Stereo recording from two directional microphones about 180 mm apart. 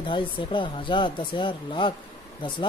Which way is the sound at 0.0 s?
25° left (ahead or behind).